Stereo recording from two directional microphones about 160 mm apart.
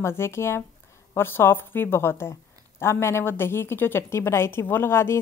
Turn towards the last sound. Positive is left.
turn(degrees=15)  # may be behind; listen again after turning